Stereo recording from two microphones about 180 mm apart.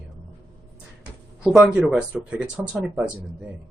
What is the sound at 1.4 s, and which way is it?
Speech, 5° right (ahead or behind).